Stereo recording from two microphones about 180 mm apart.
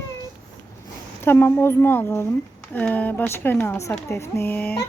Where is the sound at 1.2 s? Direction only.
10° left (ahead or behind).